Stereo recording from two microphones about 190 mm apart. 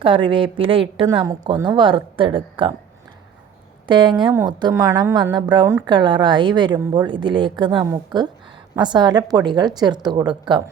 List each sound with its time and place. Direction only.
0.0 s a woman's voice: 25° right (ahead or behind)
3.8 s a woman's voice: 25° right (ahead or behind)